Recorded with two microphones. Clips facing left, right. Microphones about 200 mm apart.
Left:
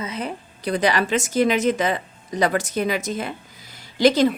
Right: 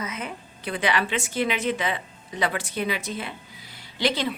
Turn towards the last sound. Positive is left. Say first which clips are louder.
# left 9 dB
turn(degrees=45)  # may be behind; listen again after turning